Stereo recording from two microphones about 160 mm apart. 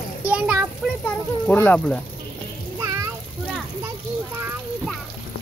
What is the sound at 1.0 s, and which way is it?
Speech, 10° left (ahead or behind).